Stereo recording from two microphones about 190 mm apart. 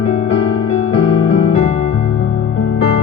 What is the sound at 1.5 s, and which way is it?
Music, 35° left (ahead or behind).